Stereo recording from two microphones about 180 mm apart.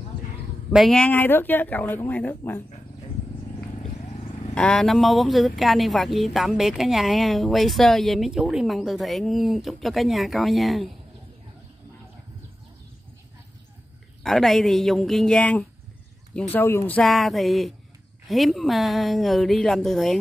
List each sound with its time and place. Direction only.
0.7 s speech: centre (ahead or behind)
4.2 s vehicle: 35° left (ahead or behind)
4.6 s speech: 5° left (ahead or behind)
14.2 s speech: centre (ahead or behind)